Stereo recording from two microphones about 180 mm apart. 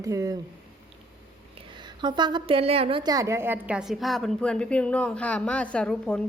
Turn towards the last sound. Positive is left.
turn(degrees=5)  # may be behind; listen again after turning